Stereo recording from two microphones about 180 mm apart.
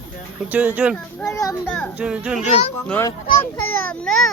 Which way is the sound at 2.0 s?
5° right (ahead or behind).